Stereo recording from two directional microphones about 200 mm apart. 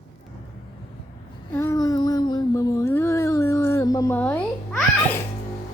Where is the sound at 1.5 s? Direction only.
15° left (ahead or behind).